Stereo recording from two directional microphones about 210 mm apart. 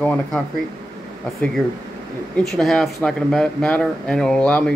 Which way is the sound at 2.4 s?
Centre (ahead or behind).